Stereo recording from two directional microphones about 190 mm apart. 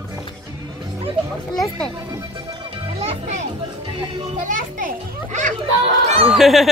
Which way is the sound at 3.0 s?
35° right (ahead or behind).